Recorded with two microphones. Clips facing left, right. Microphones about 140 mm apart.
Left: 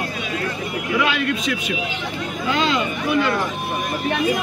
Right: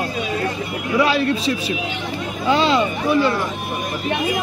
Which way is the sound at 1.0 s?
35° right (ahead or behind).